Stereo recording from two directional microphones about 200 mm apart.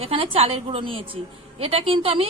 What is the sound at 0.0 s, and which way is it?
A woman's voice, 30° right (ahead or behind).